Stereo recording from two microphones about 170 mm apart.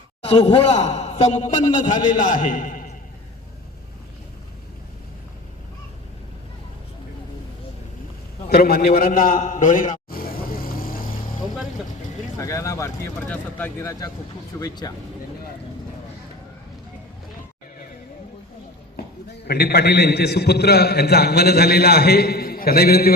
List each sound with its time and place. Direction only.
0.3 s a man's voice: 35° left (ahead or behind); by 2.8 s 50° left (ahead or behind)
8.4 s a sound: 65° left (ahead or behind)
12.4 s speech: 20° left (ahead or behind)
19.5 s a man's voice: 70° left (ahead or behind)